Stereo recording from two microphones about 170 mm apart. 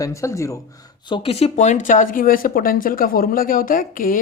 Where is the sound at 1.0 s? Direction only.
30° left (ahead or behind).